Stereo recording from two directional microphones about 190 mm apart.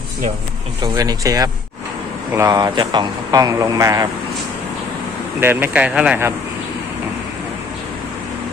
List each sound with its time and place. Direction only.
0.8 s speech: 20° right (ahead or behind)
5.4 s speech: 10° right (ahead or behind)